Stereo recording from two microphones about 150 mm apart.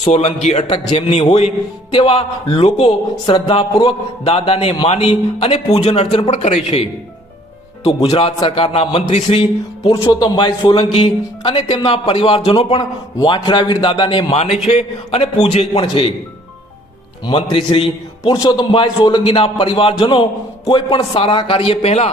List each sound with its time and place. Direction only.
0.4 s a man's voice: 45° left (ahead or behind)
7.9 s a man's voice: 40° left (ahead or behind)
17.2 s a man's voice: 35° left (ahead or behind)